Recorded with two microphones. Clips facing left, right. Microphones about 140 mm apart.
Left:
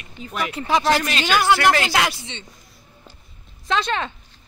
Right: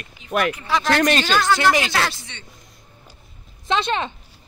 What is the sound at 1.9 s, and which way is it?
Speech, 20° left (ahead or behind).